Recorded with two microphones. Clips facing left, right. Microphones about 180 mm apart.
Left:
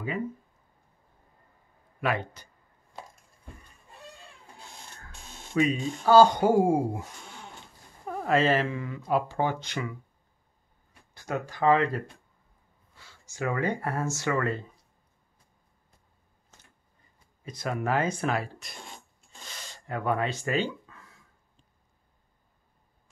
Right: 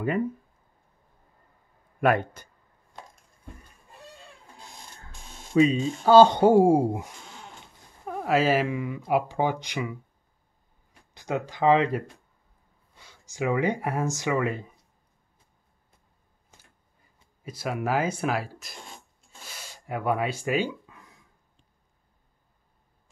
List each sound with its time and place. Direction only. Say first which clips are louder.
2.0 s speech: right 6 dB; 50° right (ahead or behind)
5.5 s speech: right 5 dB; 30° right (ahead or behind)
8.0 s speech: right 1 dB; 5° right (ahead or behind)
11.1 s speech: right 2 dB; 20° right (ahead or behind)
17.4 s speech: right 1 dB; 5° right (ahead or behind)
19.4 s a sound: right 1 dB; 10° right (ahead or behind)